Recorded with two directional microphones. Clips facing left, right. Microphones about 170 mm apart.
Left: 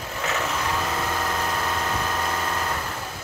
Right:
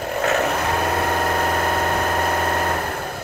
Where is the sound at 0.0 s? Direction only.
60° right (ahead or behind).